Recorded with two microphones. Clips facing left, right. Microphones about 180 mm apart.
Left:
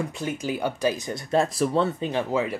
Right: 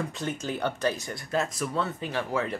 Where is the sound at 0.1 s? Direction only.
10° left (ahead or behind).